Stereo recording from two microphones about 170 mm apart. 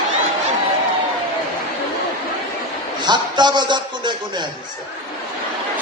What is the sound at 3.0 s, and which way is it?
A man's voice, 25° right (ahead or behind).